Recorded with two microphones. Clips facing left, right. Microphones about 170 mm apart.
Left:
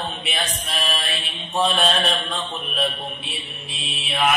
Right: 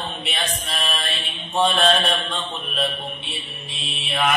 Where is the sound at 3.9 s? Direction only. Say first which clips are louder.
Even; centre (ahead or behind).